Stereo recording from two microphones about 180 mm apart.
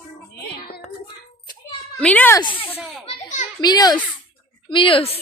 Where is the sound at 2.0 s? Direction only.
10° left (ahead or behind).